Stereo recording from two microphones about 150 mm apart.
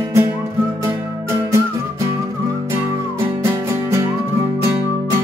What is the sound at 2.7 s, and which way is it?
Music, 15° right (ahead or behind).